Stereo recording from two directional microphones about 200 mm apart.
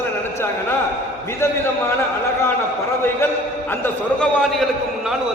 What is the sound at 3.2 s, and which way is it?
A man's voice, 10° left (ahead or behind).